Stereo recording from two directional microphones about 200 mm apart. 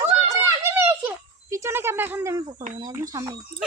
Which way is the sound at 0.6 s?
10° right (ahead or behind).